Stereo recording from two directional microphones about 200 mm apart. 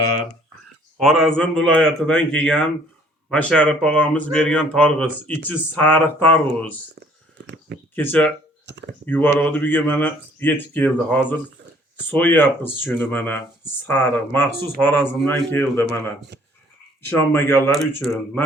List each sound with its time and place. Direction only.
0.9 s speech: centre (ahead or behind)
7.4 s a sound: 60° right (ahead or behind)
7.9 s speech: 10° left (ahead or behind)
17.1 s speech: 10° left (ahead or behind)